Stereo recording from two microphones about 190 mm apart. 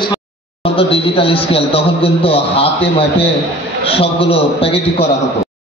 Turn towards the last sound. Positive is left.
turn(degrees=30)  # may be behind; listen again after turning